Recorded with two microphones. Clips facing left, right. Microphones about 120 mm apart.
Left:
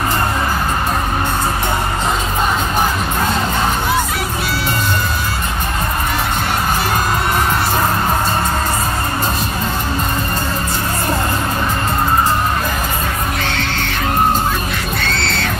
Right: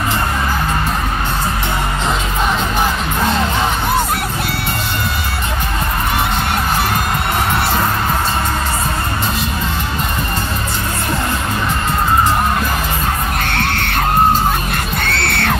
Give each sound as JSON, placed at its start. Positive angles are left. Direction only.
{"t": 13.4, "sound": "music", "side_deg": -55}
{"t": 15.0, "sound": "music", "side_deg": -60}